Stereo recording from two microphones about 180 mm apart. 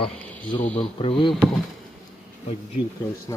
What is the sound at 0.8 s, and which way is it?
Speech, 30° left (ahead or behind).